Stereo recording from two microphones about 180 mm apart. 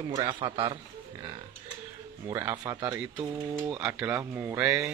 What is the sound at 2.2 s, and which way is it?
Speech, 20° right (ahead or behind).